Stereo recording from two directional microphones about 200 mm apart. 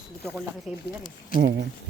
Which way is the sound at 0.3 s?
Centre (ahead or behind).